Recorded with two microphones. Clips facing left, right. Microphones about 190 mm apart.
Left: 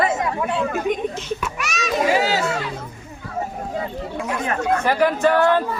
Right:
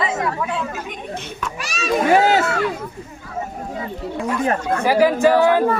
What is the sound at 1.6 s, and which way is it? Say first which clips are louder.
Speech: left 1 dB; 30° right (ahead or behind).